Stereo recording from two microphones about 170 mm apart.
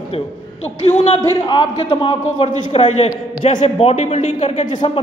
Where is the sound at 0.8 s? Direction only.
40° left (ahead or behind).